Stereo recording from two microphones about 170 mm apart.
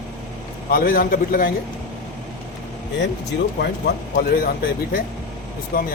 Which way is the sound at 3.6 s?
65° left (ahead or behind).